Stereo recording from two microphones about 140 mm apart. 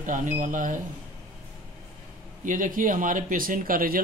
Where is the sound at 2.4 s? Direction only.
70° right (ahead or behind); by 4.0 s 90° right.